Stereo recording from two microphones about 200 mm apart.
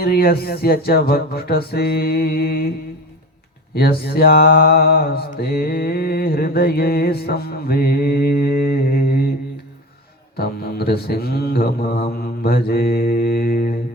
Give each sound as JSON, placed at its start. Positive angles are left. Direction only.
{"t": 0.0, "sound": "mantra", "side_deg": 50}
{"t": 3.8, "sound": "mantra", "side_deg": 50}
{"t": 10.3, "sound": "mantra", "side_deg": 50}